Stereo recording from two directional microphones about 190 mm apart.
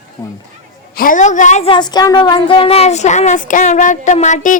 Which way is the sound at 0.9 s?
45° left (ahead or behind).